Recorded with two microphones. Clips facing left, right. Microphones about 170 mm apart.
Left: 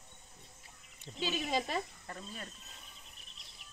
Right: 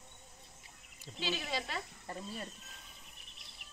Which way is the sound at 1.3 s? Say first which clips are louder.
Left 4 dB; 45° left (ahead or behind).